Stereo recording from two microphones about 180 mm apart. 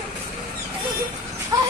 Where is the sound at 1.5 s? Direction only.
20° right (ahead or behind).